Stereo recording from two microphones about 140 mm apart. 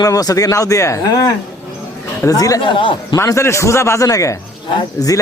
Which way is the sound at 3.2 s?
20° left (ahead or behind).